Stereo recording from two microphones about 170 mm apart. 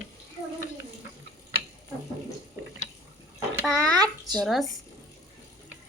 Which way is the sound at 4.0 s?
25° right (ahead or behind).